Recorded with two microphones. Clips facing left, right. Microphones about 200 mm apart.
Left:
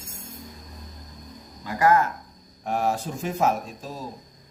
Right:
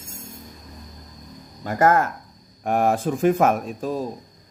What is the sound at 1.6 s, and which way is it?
A man's voice, 50° right (ahead or behind).